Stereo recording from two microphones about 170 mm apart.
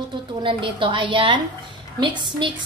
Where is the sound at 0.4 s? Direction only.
30° right (ahead or behind).